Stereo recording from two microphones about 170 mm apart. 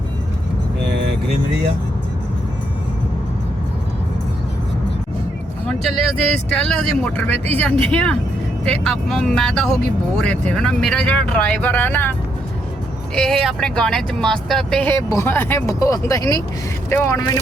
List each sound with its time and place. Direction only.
6.5 s speech: 5° left (ahead or behind)
13.1 s speech: centre (ahead or behind); by 17.4 s 20° left (ahead or behind)